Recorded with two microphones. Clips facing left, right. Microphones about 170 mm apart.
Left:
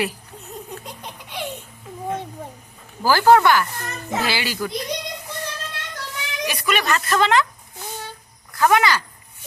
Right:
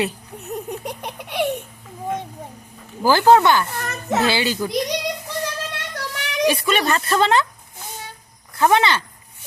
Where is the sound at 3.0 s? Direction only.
20° right (ahead or behind).